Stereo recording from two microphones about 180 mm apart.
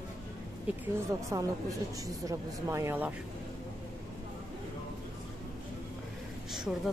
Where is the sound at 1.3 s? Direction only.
20° right (ahead or behind).